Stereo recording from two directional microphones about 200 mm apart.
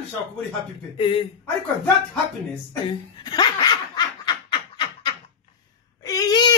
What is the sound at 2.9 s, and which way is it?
Speech, 20° left (ahead or behind).